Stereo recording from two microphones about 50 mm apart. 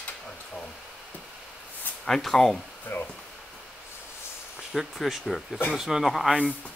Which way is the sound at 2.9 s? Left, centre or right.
Left.